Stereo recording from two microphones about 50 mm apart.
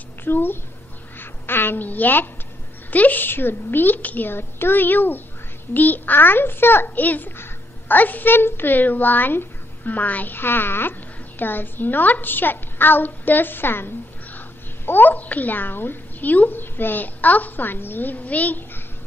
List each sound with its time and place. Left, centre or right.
0.2 s speech: left
4.3 s a child's voice: left
7.3 s a sound: left
8.0 s speech: left